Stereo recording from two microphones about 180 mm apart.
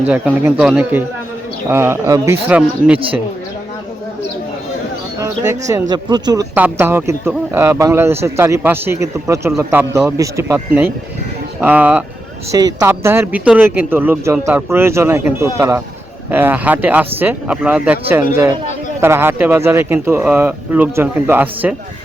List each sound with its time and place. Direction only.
0.1 s speech: 5° right (ahead or behind)
5.2 s speech: 15° right (ahead or behind)
6.5 s speech: 10° right (ahead or behind)
12.5 s speech: 20° right (ahead or behind)